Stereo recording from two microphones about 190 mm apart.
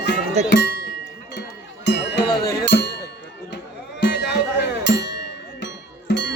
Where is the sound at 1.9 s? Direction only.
65° left (ahead or behind).